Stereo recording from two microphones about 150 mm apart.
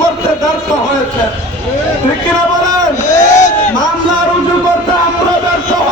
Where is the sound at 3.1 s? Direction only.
20° left (ahead or behind).